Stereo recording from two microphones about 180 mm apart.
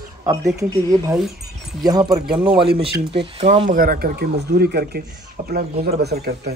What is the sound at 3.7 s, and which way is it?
Speech, 55° right (ahead or behind).